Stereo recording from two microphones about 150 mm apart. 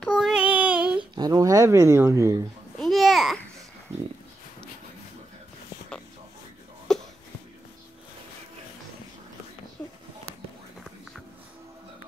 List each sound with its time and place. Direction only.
0.0 s child singing: 5° left (ahead or behind)
0.3 s child singing: 10° right (ahead or behind)
1.1 s speech: 25° right (ahead or behind)
2.8 s babbling: centre (ahead or behind)
6.9 s a sound: centre (ahead or behind)
9.8 s a sound: 10° left (ahead or behind)